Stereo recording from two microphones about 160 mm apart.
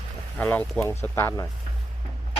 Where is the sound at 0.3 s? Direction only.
10° left (ahead or behind).